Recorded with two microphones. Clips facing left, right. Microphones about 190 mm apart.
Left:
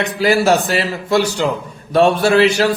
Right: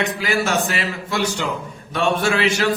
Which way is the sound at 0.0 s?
35° left (ahead or behind).